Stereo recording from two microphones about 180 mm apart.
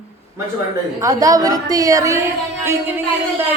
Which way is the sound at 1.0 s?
20° right (ahead or behind).